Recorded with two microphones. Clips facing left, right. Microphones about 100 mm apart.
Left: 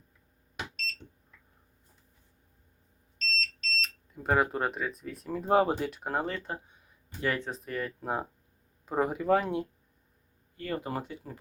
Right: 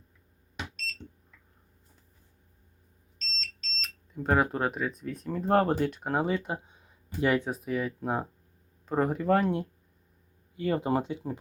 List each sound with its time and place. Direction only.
3.3 s speech: centre (ahead or behind)
10.6 s speech: 20° right (ahead or behind)